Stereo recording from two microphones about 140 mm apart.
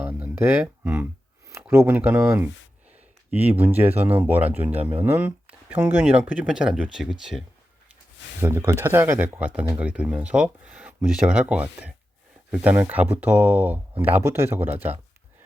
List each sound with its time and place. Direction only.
0.0 s a sound: 10° right (ahead or behind)
1.7 s speech: 15° right (ahead or behind)
3.6 s speech: 15° right (ahead or behind)
8.4 s speech: 20° right (ahead or behind)